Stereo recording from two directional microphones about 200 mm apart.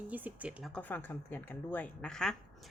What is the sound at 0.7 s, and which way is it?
A woman's voice, 5° left (ahead or behind).